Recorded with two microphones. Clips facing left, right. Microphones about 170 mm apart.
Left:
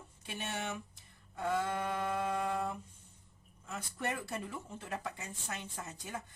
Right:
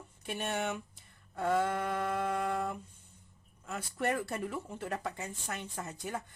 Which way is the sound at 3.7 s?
60° right (ahead or behind).